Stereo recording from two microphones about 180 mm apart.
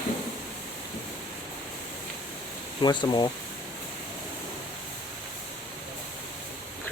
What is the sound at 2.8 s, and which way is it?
Speech, 25° left (ahead or behind).